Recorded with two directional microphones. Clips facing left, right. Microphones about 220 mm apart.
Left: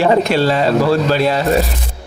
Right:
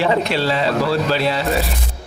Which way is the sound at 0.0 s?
45° left (ahead or behind).